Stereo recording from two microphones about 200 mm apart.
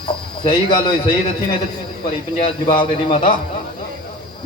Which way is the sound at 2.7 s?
25° left (ahead or behind).